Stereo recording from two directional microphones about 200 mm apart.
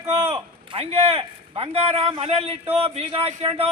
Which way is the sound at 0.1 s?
30° right (ahead or behind).